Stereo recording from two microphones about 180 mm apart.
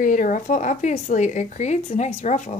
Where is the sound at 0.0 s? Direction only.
45° left (ahead or behind).